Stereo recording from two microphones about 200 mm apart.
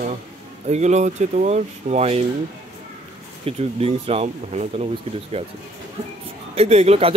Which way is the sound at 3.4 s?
30° right (ahead or behind).